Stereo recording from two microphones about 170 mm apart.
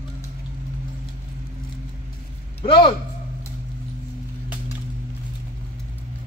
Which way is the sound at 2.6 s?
30° left (ahead or behind).